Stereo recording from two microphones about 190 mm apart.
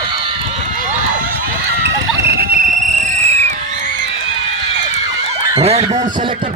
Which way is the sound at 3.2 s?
35° right (ahead or behind).